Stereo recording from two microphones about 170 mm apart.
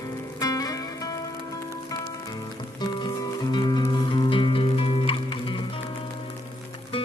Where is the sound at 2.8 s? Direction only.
25° left (ahead or behind).